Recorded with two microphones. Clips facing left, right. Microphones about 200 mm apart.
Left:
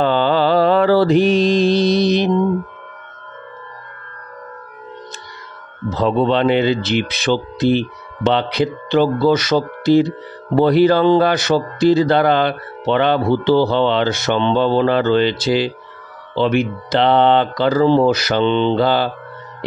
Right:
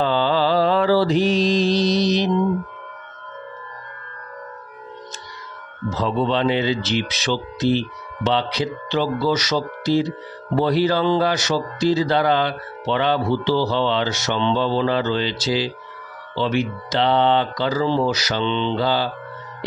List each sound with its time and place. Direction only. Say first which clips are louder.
0.0 s mantra: left 4 dB; 55° left (ahead or behind)
5.9 s speech: left 5 dB; 60° left (ahead or behind)